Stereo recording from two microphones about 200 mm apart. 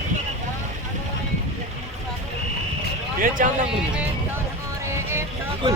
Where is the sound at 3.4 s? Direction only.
40° right (ahead or behind).